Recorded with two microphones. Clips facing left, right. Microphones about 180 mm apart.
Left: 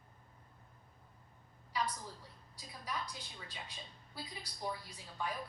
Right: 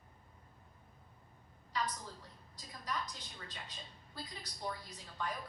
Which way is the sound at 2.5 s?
10° left (ahead or behind).